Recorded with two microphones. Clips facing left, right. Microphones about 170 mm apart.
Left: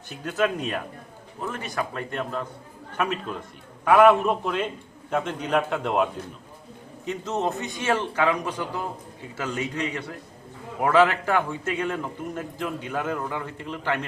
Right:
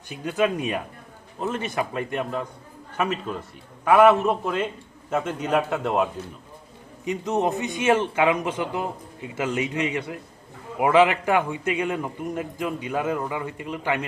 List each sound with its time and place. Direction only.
0.1 s a man's voice: 10° right (ahead or behind)
1.4 s a man's voice: 20° right (ahead or behind); by 6.1 s centre (ahead or behind)
7.0 s a man's voice: 15° right (ahead or behind)